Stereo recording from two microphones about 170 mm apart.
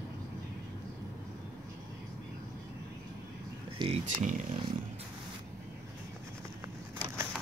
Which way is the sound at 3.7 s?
35° right (ahead or behind).